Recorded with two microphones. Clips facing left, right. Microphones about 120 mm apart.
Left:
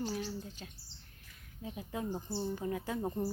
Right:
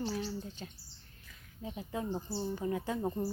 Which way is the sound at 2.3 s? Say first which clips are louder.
Even; 10° right (ahead or behind).